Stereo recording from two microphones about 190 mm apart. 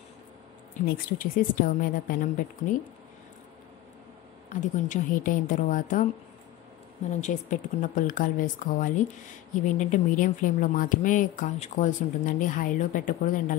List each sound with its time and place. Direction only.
0.8 s speech: 50° left (ahead or behind)
4.5 s speech: 40° left (ahead or behind)
7.2 s speech: 40° left (ahead or behind)